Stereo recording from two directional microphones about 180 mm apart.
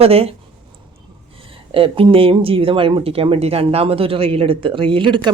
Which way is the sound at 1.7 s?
30° right (ahead or behind).